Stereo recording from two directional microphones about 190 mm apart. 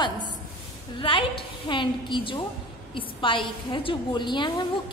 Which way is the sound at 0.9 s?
25° left (ahead or behind).